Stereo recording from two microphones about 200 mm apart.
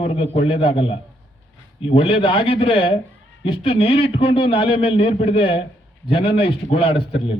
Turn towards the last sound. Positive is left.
turn(degrees=30)  # may be behind; listen again after turning